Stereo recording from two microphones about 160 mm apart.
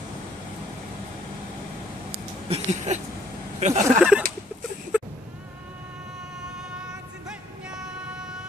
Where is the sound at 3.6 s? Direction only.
50° right (ahead or behind).